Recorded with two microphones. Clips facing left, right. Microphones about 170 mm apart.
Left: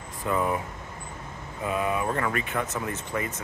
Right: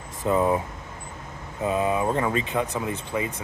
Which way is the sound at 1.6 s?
25° right (ahead or behind).